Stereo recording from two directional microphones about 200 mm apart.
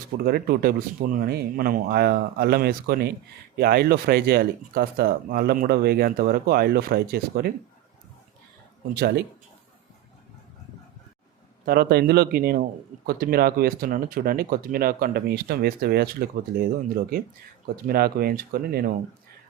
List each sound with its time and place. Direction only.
0.3 s speech: 50° right (ahead or behind)
9.0 s speech: 50° right (ahead or behind)
11.6 s speech: 50° right (ahead or behind)